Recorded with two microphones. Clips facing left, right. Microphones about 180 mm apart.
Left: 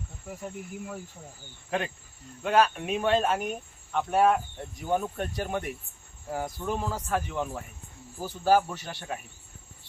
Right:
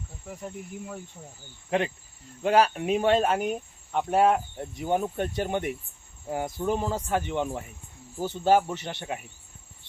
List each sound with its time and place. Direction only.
0.3 s cricket: centre (ahead or behind)
2.4 s speech: 30° right (ahead or behind)